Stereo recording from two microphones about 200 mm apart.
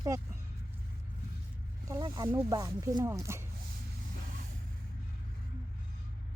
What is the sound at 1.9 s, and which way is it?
Speech, 20° right (ahead or behind).